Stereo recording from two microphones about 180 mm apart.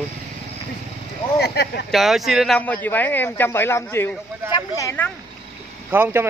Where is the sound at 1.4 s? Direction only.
65° left (ahead or behind).